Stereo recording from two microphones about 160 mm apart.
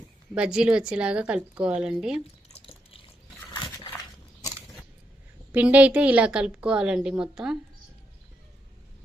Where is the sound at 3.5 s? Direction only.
25° left (ahead or behind).